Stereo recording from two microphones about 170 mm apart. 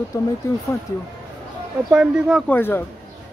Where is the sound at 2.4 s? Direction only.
10° left (ahead or behind).